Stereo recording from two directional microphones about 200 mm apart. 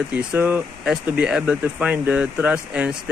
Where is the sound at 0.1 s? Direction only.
5° right (ahead or behind).